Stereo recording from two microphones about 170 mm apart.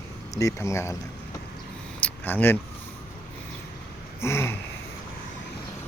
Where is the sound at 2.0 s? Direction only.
10° left (ahead or behind).